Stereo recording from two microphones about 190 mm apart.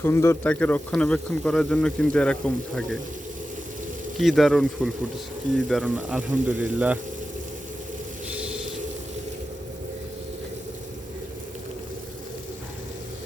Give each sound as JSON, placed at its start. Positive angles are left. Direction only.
{"t": 0.0, "sound": "speech", "side_deg": 15}
{"t": 4.2, "sound": "speech", "side_deg": 0}
{"t": 8.3, "sound": "a sound", "side_deg": -5}